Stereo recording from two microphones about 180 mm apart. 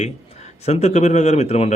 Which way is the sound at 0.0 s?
35° left (ahead or behind).